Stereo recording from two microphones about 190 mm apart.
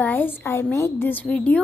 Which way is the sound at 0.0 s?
10° left (ahead or behind).